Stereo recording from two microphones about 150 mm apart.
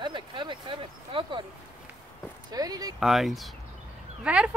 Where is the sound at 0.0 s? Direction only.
30° right (ahead or behind).